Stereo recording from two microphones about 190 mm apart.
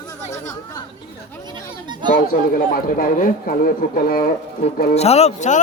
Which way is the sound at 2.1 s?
50° left (ahead or behind).